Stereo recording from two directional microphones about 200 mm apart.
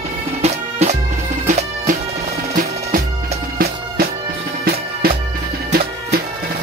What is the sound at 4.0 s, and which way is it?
Music, 45° right (ahead or behind).